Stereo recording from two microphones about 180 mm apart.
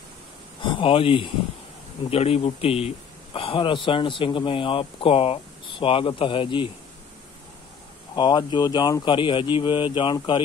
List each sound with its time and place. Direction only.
0.6 s speech: 25° left (ahead or behind)
8.2 s speech: 25° left (ahead or behind)